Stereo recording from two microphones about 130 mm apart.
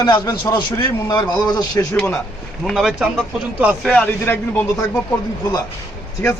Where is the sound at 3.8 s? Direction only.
10° left (ahead or behind).